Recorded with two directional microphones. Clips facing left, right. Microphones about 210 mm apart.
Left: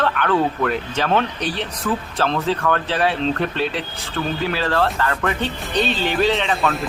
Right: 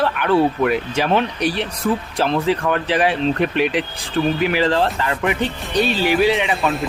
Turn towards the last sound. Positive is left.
turn(degrees=0)  # may be behind; listen again after turning